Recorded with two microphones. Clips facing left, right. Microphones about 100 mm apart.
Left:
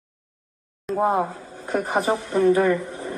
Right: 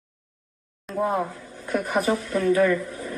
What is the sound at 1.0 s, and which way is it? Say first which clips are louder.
A woman's voice: left 3 dB; 30° left (ahead or behind).